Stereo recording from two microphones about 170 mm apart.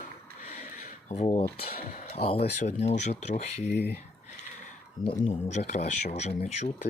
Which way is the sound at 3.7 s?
80° left.